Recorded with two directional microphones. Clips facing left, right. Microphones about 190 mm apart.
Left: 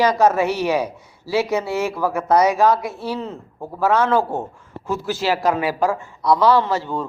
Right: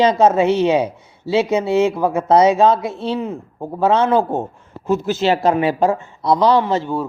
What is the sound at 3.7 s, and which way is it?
Speech, 20° right (ahead or behind).